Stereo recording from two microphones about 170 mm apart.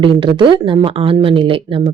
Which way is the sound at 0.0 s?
30° right (ahead or behind).